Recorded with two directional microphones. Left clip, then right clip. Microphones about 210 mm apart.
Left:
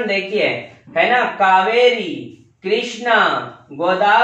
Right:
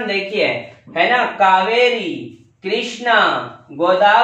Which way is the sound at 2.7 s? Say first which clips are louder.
Even; centre (ahead or behind).